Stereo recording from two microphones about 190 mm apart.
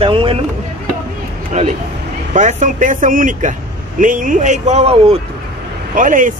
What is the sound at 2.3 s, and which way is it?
Speech, 40° right (ahead or behind).